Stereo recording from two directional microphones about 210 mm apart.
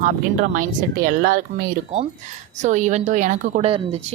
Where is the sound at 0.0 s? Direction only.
40° right (ahead or behind).